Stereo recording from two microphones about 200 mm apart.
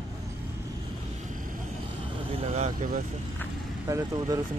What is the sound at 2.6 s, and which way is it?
Speech, 40° right (ahead or behind).